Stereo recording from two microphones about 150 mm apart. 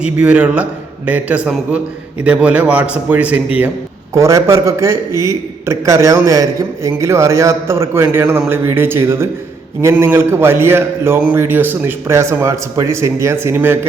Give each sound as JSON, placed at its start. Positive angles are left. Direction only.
{"t": 0.0, "sound": "a man's voice", "side_deg": -10}